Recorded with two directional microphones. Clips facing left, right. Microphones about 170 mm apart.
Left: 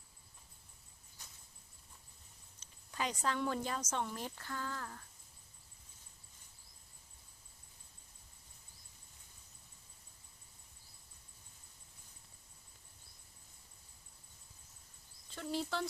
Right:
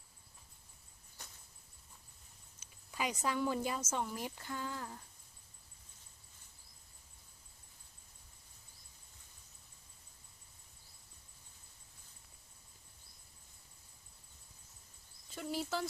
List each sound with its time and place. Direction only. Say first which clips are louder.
2.6 s a woman's voice: right 1 dB; 10° right (ahead or behind)
15.4 s cricket: even; 5° right (ahead or behind)